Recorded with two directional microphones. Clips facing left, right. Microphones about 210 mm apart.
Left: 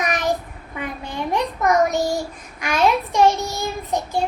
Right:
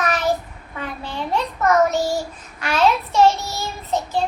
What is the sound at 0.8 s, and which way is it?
Child singing, 15° left (ahead or behind).